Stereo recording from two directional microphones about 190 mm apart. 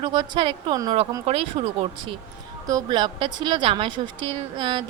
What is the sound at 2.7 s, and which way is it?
A woman's voice, 20° right (ahead or behind).